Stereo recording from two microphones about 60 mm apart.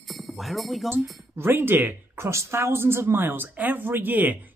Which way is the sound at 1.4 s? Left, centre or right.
Right.